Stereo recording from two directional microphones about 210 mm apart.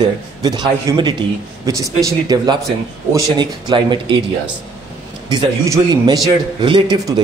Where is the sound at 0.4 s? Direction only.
20° right (ahead or behind).